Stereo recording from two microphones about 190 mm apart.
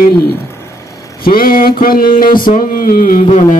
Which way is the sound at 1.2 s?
50° left (ahead or behind).